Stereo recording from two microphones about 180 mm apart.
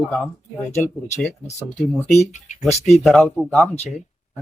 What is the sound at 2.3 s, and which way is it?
Speech, 40° left (ahead or behind).